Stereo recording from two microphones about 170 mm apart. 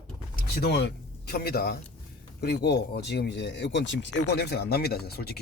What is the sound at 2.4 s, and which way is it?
Speech, 75° left (ahead or behind).